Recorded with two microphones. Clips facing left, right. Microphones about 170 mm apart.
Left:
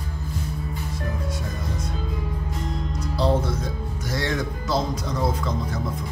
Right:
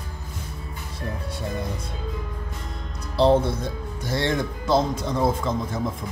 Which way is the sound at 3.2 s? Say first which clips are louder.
Right 4 dB; 25° right (ahead or behind).